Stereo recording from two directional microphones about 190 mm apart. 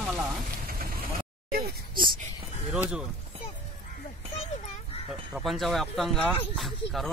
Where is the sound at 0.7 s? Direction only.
50° right (ahead or behind).